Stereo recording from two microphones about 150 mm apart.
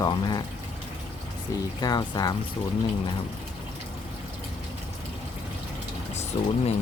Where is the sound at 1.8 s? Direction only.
25° left (ahead or behind).